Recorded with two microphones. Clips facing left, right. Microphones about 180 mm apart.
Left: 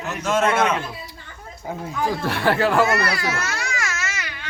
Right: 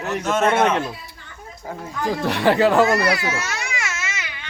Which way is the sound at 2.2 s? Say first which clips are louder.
Right 5 dB; 15° right (ahead or behind).